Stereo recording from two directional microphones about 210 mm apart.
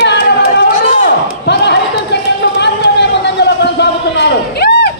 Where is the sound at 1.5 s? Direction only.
55° left (ahead or behind).